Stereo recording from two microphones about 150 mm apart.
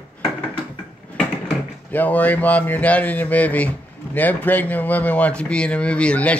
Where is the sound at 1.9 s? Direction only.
10° left (ahead or behind).